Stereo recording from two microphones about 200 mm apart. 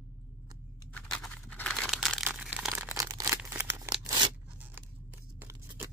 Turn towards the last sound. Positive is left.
turn(degrees=-10)  # may be behind; listen again after turning